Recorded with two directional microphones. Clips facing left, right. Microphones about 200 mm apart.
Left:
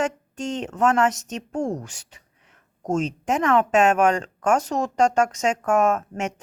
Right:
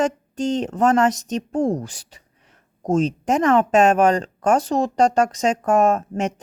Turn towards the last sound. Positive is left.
turn(degrees=-30)  # may be behind; listen again after turning